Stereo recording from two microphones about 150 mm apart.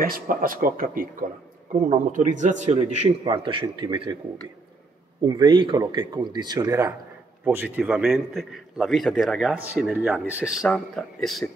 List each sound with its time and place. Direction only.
0.0 s speech: 70° right (ahead or behind)
2.1 s a man's voice: 55° right (ahead or behind)
3.3 s speech: 30° right (ahead or behind)
5.2 s a man's voice: 30° right (ahead or behind)
7.4 s a man's voice: 10° right (ahead or behind)